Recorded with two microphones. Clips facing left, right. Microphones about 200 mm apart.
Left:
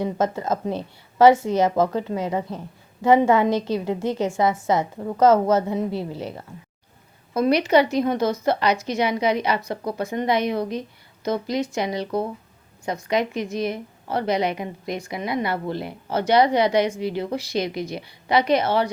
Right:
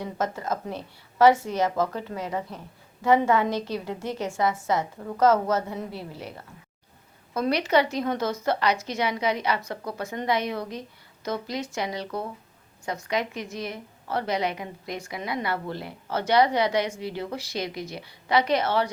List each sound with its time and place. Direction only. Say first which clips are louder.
0.0 s a woman's voice: left 6 dB; 25° left (ahead or behind)
7.3 s a woman's voice: left 5 dB; 15° left (ahead or behind)